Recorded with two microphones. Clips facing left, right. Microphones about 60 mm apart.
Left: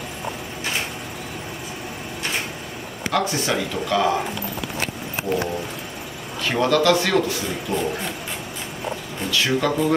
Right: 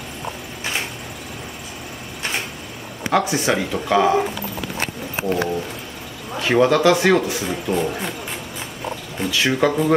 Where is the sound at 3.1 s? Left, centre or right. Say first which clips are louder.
Right 3 dB; centre.